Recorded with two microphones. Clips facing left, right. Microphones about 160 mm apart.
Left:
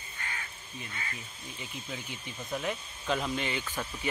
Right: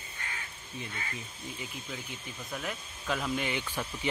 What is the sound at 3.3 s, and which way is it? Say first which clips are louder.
Speech: right 1 dB; 10° right (ahead or behind).